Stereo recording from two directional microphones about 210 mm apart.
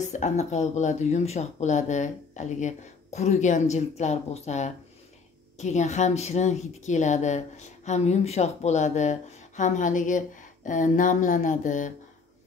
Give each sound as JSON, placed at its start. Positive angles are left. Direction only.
{"t": 0.0, "sound": "a woman's voice", "side_deg": 35}